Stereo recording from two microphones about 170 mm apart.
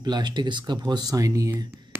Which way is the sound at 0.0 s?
25° right (ahead or behind).